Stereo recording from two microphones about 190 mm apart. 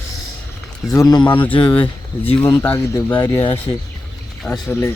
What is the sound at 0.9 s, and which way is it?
Speech, 20° left (ahead or behind).